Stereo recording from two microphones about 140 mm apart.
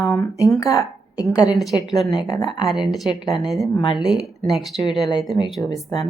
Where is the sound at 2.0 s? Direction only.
Centre (ahead or behind).